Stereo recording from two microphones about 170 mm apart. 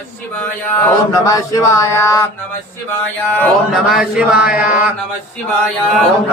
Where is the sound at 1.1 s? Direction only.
20° left (ahead or behind).